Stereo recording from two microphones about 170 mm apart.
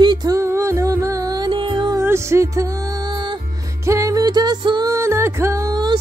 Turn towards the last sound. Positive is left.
turn(degrees=-20)  # may be behind; listen again after turning